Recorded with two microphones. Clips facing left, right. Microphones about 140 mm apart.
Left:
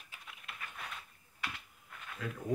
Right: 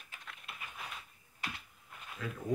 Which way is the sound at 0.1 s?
5° left (ahead or behind).